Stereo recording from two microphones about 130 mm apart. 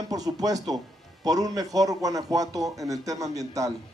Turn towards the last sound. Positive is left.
turn(degrees=-25)  # may be behind; listen again after turning